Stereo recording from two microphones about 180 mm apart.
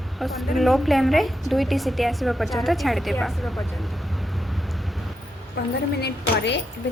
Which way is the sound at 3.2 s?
Centre (ahead or behind).